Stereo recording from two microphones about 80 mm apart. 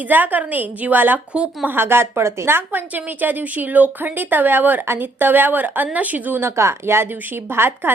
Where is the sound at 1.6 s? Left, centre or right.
Right.